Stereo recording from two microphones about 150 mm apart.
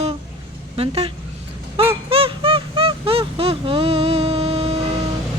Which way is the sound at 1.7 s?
40° right (ahead or behind).